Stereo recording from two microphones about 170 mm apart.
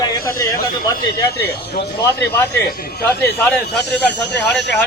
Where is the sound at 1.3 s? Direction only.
70° left (ahead or behind).